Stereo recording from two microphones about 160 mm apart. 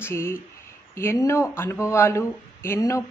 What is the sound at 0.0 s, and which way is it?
Speech, 15° left (ahead or behind).